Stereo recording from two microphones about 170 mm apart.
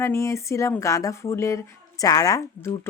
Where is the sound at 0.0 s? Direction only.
15° left (ahead or behind).